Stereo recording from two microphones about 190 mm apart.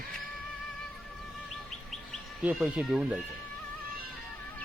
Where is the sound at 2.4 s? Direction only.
5° right (ahead or behind).